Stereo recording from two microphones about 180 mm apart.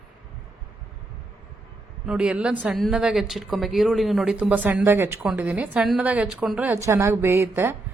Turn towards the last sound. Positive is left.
turn(degrees=-15)  # may be behind; listen again after turning